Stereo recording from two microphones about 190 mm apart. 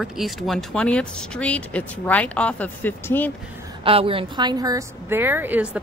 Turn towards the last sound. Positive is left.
turn(degrees=-10)  # may be behind; listen again after turning